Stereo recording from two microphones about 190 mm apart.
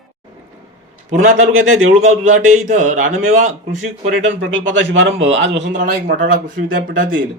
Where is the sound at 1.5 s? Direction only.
90° right.